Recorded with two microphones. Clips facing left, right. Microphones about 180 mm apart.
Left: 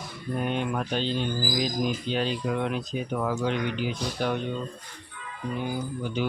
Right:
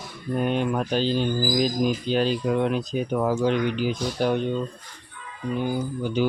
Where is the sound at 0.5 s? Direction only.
35° right (ahead or behind).